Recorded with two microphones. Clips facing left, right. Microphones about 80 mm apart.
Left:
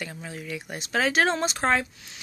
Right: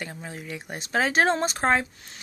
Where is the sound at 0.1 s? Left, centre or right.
Right.